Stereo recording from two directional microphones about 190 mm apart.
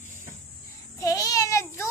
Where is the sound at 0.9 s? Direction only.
15° left (ahead or behind).